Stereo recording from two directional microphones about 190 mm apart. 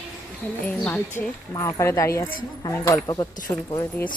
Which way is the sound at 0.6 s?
5° left (ahead or behind).